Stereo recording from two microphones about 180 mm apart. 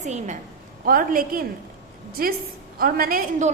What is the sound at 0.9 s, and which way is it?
A woman's voice, 50° right (ahead or behind).